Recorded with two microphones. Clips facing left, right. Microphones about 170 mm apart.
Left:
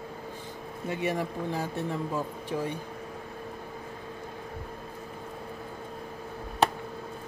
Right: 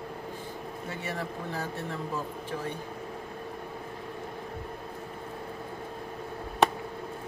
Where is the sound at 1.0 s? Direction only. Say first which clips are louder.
Left 6 dB; 15° left (ahead or behind).